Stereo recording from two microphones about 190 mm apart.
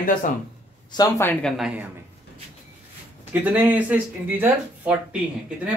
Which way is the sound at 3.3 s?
10° right (ahead or behind).